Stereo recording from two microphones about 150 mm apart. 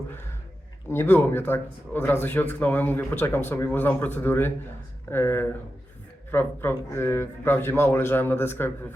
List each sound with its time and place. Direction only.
0.9 s speech: 15° left (ahead or behind)